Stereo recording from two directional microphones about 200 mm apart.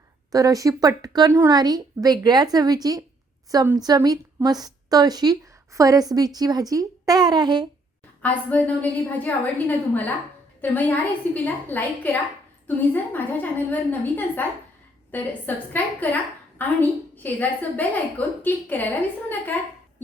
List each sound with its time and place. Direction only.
0.3 s a woman's voice: 15° right (ahead or behind)
8.2 s a woman's voice: 10° left (ahead or behind)